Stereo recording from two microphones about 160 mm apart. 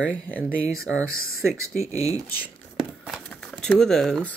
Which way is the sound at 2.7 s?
Centre (ahead or behind).